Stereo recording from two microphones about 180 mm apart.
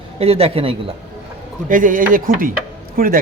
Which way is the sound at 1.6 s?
45° right (ahead or behind).